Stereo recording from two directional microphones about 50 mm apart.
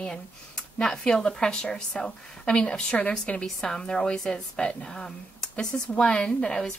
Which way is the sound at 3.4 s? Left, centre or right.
Centre.